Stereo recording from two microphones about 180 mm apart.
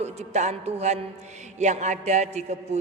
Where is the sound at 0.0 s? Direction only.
40° right (ahead or behind).